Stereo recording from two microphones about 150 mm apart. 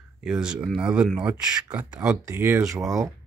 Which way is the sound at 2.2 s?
20° right (ahead or behind).